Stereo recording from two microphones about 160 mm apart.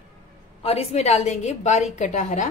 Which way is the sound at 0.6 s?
40° left (ahead or behind).